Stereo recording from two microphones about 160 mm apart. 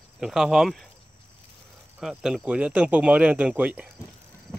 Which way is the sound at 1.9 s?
5° right (ahead or behind).